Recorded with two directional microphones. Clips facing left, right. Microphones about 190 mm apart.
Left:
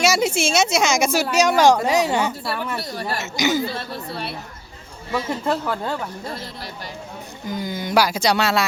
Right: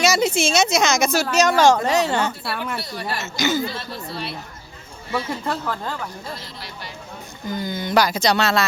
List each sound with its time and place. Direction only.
0.0 s a woman's voice: 10° left (ahead or behind)
2.5 s speech: 10° right (ahead or behind)
2.8 s speech: 45° left (ahead or behind)
3.3 s a woman's voice: 15° left (ahead or behind)
3.8 s speech: 55° left (ahead or behind)
7.4 s a woman's voice: 10° left (ahead or behind)